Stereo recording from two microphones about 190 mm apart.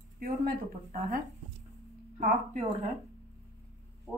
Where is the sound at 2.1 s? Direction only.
45° right (ahead or behind).